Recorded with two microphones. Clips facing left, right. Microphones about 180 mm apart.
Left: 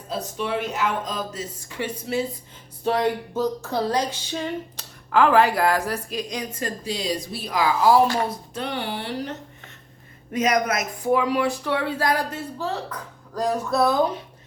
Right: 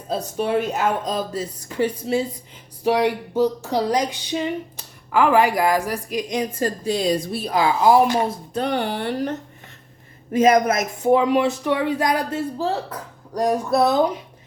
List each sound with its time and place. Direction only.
0.1 s speech: 40° right (ahead or behind)
2.8 s speech: 10° right (ahead or behind)
6.8 s speech: 50° right (ahead or behind)
7.4 s speech: 25° right (ahead or behind)
8.5 s speech: 45° right (ahead or behind)
10.3 s speech: 30° right (ahead or behind)
12.5 s speech: 35° right (ahead or behind)
13.3 s speech: 20° right (ahead or behind)